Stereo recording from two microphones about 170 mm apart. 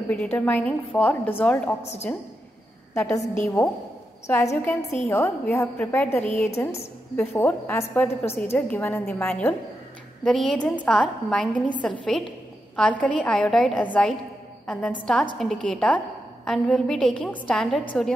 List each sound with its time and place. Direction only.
0.1 s a woman's voice: 10° left (ahead or behind)
1.8 s a woman's voice: 40° left (ahead or behind)
2.9 s a woman's voice: 15° left (ahead or behind)